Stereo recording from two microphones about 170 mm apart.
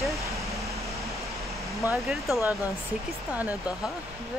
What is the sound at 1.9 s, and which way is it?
Speech, centre (ahead or behind).